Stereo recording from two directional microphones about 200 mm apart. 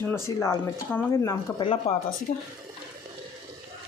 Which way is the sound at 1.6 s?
25° left (ahead or behind).